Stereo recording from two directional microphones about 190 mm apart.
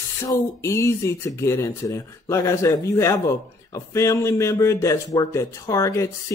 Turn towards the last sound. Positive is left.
turn(degrees=15)  # may be behind; listen again after turning